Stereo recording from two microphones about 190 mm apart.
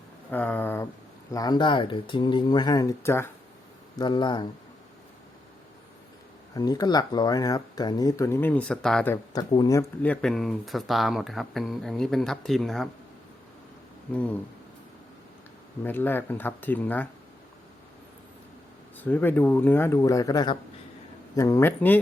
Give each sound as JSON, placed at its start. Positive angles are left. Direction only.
{"t": 0.3, "sound": "speech", "side_deg": 10}
{"t": 3.9, "sound": "speech", "side_deg": 25}
{"t": 6.5, "sound": "speech", "side_deg": 20}
{"t": 9.3, "sound": "speech", "side_deg": 20}
{"t": 14.1, "sound": "speech", "side_deg": 5}
{"t": 15.8, "sound": "speech", "side_deg": 10}
{"t": 18.9, "sound": "speech", "side_deg": 10}